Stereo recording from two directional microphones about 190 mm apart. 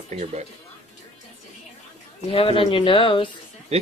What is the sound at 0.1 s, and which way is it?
Speech, 35° right (ahead or behind).